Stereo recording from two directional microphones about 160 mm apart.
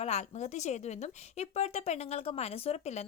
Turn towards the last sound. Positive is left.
turn(degrees=45)  # may be behind; listen again after turning